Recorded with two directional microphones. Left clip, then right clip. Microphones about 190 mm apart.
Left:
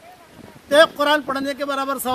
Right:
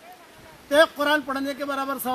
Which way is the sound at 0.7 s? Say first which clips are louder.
Left 4 dB; 20° left (ahead or behind).